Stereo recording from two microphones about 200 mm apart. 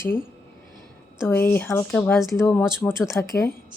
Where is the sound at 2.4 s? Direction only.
10° left (ahead or behind).